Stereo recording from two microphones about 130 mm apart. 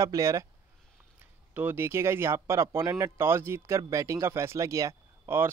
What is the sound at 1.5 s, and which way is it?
Speech, 15° right (ahead or behind).